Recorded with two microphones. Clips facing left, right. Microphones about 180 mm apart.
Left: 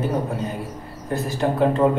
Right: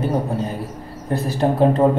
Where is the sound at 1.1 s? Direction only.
35° right (ahead or behind).